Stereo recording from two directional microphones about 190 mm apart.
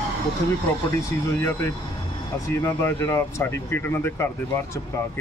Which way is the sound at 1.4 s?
15° left (ahead or behind).